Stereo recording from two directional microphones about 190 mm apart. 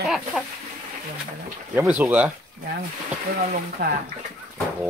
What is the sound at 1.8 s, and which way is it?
Speech, 10° right (ahead or behind).